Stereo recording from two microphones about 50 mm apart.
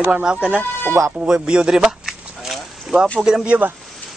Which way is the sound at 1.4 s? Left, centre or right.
Centre.